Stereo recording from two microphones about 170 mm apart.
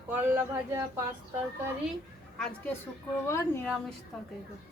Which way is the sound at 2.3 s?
5° left (ahead or behind).